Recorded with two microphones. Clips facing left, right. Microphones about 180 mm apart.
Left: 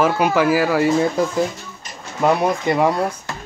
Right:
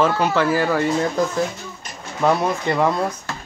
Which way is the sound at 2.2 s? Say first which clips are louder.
Left 2 dB; 10° left (ahead or behind).